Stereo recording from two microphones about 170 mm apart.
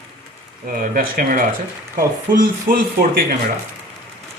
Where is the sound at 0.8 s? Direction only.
55° right (ahead or behind).